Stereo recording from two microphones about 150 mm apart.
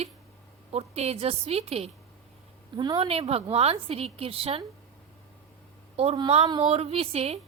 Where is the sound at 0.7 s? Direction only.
45° right (ahead or behind).